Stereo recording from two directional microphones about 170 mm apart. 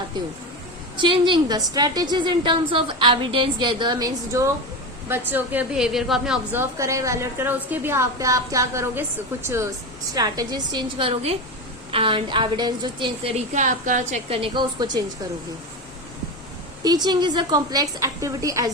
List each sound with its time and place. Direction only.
0.9 s a woman's voice: 30° right (ahead or behind); by 14.2 s 50° right (ahead or behind)
14.3 s a woman's voice: 30° right (ahead or behind)
16.8 s a woman's voice: 25° right (ahead or behind)